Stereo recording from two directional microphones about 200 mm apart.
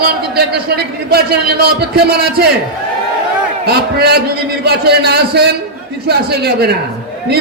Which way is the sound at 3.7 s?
55° right (ahead or behind).